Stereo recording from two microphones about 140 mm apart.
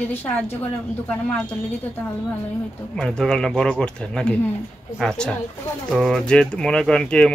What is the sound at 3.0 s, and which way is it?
Speech, 5° left (ahead or behind).